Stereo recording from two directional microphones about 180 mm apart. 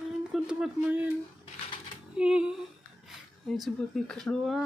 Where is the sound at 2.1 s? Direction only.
5° right (ahead or behind).